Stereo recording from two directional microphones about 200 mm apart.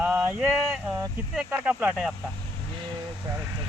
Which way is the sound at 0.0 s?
10° right (ahead or behind).